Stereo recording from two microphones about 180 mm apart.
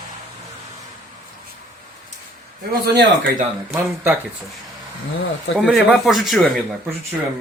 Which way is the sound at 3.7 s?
10° right (ahead or behind).